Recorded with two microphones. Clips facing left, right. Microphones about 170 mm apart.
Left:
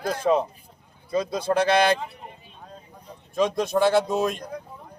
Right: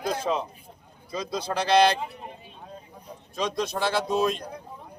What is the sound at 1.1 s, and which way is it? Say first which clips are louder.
Speech: left 6 dB; 55° left (ahead or behind).